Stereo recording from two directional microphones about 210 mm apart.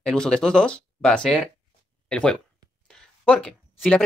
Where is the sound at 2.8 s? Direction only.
5° left (ahead or behind).